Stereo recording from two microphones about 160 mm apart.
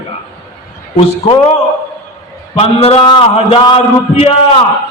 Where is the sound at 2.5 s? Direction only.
35° left (ahead or behind).